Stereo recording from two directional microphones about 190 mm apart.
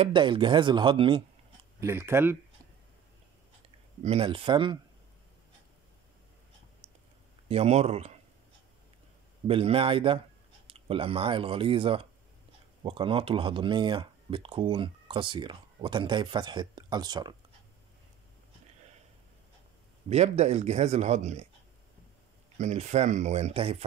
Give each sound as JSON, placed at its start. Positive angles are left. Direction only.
{"t": 0.0, "sound": "speech", "side_deg": -25}
{"t": 1.8, "sound": "speech", "side_deg": -15}
{"t": 4.0, "sound": "speech", "side_deg": -30}
{"t": 7.4, "sound": "speech", "side_deg": -35}
{"t": 9.5, "sound": "speech", "side_deg": -30}
{"t": 20.1, "sound": "speech", "side_deg": -35}
{"t": 22.6, "sound": "speech", "side_deg": -35}